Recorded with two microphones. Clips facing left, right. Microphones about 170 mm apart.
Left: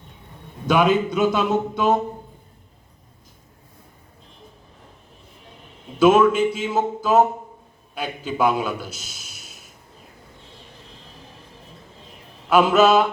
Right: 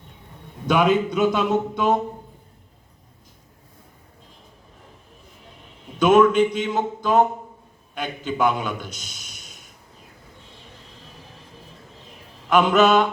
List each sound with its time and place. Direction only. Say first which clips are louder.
0.7 s speech: left 1 dB; 5° left (ahead or behind)
6.0 s a man's voice: even; 5° left (ahead or behind)
12.5 s a man's voice: left 1 dB; 10° left (ahead or behind)